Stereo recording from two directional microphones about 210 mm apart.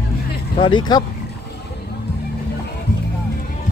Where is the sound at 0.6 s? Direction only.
25° left (ahead or behind).